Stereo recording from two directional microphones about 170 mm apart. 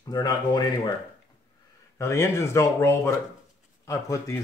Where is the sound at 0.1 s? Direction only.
25° left (ahead or behind).